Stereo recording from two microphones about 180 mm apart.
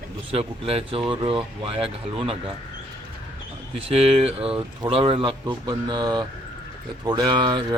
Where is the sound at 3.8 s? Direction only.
35° right (ahead or behind).